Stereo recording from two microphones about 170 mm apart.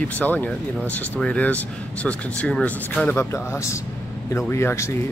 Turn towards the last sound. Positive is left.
turn(degrees=15)  # may be behind; listen again after turning